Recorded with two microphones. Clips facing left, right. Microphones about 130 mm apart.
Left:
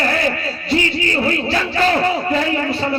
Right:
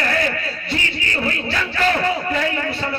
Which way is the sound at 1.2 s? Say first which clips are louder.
Left 5 dB; 30° left (ahead or behind).